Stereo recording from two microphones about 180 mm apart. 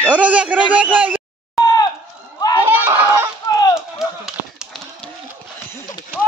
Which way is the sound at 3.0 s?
15° right (ahead or behind).